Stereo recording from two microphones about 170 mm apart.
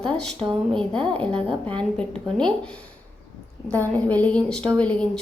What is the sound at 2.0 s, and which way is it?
Speech, 5° left (ahead or behind).